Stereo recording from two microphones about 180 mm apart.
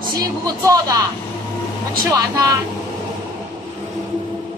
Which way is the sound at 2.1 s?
20° right (ahead or behind).